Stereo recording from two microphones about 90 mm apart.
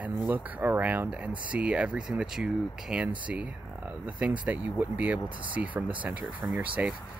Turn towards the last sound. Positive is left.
turn(degrees=-15)  # may be behind; listen again after turning